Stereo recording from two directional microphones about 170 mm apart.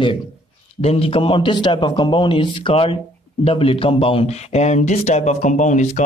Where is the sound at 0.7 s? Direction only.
35° left (ahead or behind).